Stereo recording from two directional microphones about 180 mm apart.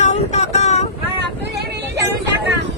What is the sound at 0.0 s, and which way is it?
Vehicle, 40° left (ahead or behind).